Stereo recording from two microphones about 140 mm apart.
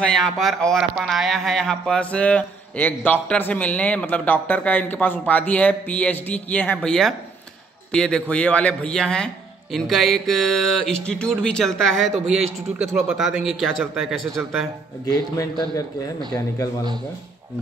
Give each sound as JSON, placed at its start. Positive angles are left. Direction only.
{"t": 0.0, "sound": "a man's voice", "side_deg": 5}
{"t": 15.3, "sound": "speech", "side_deg": 20}